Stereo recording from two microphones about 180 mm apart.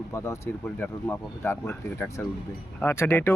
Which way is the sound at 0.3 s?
10° left (ahead or behind).